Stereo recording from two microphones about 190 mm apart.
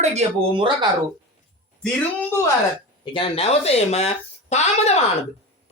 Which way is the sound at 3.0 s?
25° left (ahead or behind).